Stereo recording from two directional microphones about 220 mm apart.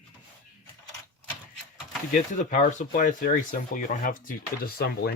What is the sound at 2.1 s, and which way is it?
Speech, 35° left (ahead or behind).